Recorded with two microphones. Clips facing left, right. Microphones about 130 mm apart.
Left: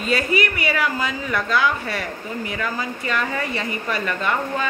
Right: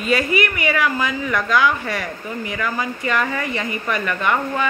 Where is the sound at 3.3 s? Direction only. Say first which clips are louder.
Right 1 dB; 30° left (ahead or behind).